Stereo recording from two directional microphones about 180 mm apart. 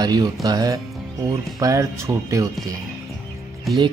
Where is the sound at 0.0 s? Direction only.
20° right (ahead or behind).